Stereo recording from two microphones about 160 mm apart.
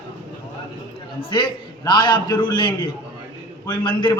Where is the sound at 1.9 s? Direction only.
30° left (ahead or behind).